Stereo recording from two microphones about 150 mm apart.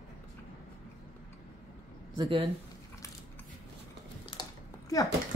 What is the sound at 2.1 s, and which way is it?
Speech, 35° right (ahead or behind).